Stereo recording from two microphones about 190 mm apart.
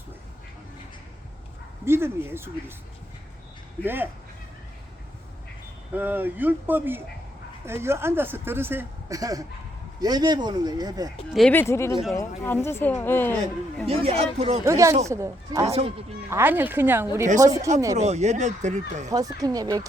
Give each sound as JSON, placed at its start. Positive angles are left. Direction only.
{"t": 1.8, "sound": "speech", "side_deg": -10}
{"t": 3.8, "sound": "speech", "side_deg": -10}
{"t": 5.9, "sound": "speech", "side_deg": -10}
{"t": 11.3, "sound": "speech", "side_deg": 5}
{"t": 13.8, "sound": "speech", "side_deg": -30}
{"t": 14.6, "sound": "speech", "side_deg": -15}
{"t": 17.9, "sound": "speech", "side_deg": -35}
{"t": 19.1, "sound": "speech", "side_deg": -20}